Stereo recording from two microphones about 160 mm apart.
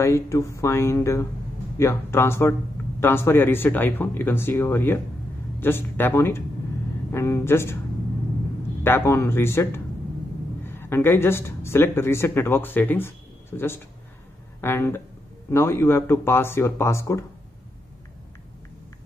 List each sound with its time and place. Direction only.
0.0 s speech: 20° left (ahead or behind)
8.8 s speech: 15° left (ahead or behind)